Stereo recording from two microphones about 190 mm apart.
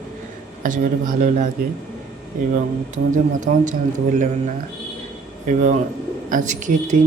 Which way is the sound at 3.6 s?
40° right (ahead or behind).